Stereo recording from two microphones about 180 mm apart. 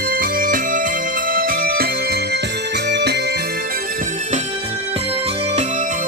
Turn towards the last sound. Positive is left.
turn(degrees=-45)  # may be behind; listen again after turning